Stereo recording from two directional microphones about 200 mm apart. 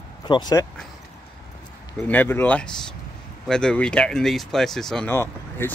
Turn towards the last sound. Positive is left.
turn(degrees=10)  # may be behind; listen again after turning